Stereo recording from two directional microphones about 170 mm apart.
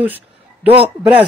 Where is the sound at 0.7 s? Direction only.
35° right (ahead or behind).